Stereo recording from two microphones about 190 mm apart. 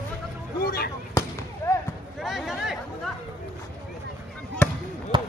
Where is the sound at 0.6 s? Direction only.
55° left (ahead or behind).